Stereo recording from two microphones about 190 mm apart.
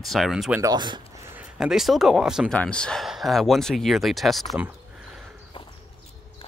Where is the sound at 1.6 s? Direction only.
Centre (ahead or behind).